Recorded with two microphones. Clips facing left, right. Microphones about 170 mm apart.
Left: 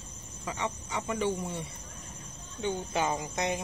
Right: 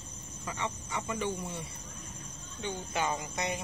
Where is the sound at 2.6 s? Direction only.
25° left (ahead or behind).